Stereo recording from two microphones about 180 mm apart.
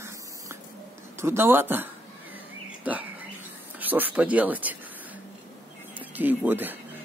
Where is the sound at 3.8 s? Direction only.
10° right (ahead or behind).